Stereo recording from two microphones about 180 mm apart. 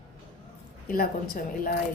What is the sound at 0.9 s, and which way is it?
Speech, 55° left (ahead or behind).